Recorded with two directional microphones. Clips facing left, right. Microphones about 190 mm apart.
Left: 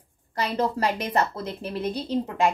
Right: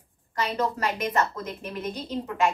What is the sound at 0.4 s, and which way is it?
A woman's voice, 35° left (ahead or behind).